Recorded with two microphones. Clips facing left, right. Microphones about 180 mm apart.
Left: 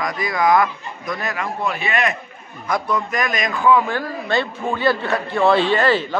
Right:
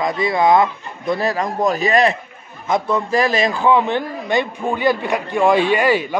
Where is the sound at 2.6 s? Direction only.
25° right (ahead or behind).